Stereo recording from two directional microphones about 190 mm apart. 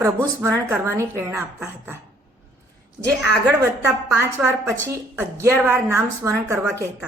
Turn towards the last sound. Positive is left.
turn(degrees=-15)  # may be behind; listen again after turning